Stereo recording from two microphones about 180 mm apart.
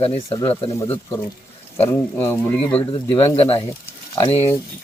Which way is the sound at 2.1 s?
10° left (ahead or behind).